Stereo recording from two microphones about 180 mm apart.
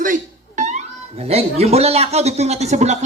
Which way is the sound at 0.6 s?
40° right (ahead or behind).